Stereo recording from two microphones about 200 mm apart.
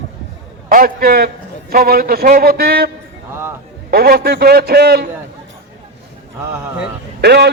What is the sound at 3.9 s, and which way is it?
A man's voice, 50° right (ahead or behind).